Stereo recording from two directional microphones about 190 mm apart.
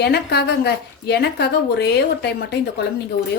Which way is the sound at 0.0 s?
60° left (ahead or behind).